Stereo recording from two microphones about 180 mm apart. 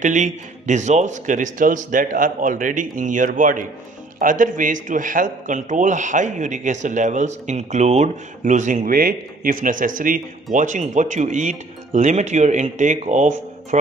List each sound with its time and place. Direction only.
0.0 s a man's voice: 40° right (ahead or behind)